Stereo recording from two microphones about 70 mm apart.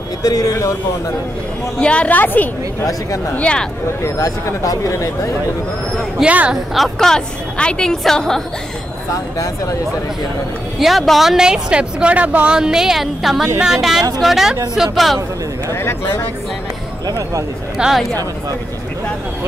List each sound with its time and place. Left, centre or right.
0.2 s speech: left
1.8 s a woman's voice: centre
2.8 s speech: left
3.3 s a woman's voice: centre
4.5 s speech: left
6.2 s speech: centre
6.5 s a woman's voice: centre
9.1 s speech: left
10.8 s speech: centre; by 12.5 s right
12.5 s speech: centre
15.7 s speech: left
17.7 s speech: centre